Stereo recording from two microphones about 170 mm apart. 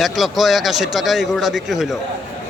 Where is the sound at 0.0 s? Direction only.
Centre (ahead or behind).